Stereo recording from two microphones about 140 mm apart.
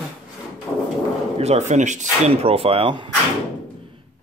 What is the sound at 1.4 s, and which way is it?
Speech, 55° right (ahead or behind).